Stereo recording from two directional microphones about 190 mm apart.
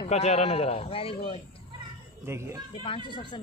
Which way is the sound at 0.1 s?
35° left (ahead or behind).